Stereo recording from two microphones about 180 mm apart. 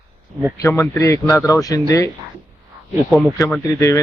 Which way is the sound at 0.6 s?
15° left (ahead or behind).